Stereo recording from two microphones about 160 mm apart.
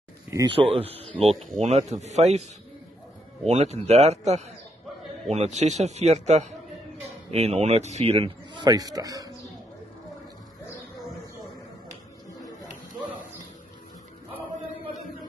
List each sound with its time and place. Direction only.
0.5 s a man's voice: 35° right (ahead or behind)
3.4 s a man's voice: 45° right (ahead or behind)
8.6 s a man's voice: 25° right (ahead or behind)